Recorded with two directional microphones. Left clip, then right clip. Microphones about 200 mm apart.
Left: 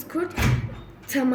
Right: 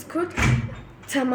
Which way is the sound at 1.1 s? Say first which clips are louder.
Even; 10° left (ahead or behind).